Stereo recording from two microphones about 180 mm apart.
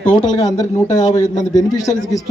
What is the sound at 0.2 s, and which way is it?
A man's voice, 25° left (ahead or behind).